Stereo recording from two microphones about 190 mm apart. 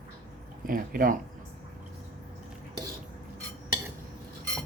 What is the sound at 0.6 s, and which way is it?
Speech, 45° right (ahead or behind).